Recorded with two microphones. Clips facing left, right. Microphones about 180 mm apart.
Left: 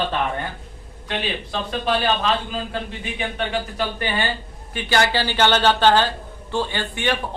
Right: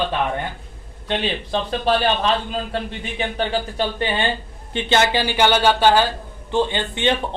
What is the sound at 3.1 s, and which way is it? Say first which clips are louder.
Speech: right 3 dB; 30° right (ahead or behind).